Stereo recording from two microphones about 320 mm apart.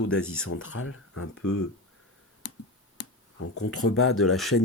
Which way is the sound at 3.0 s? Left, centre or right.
Left.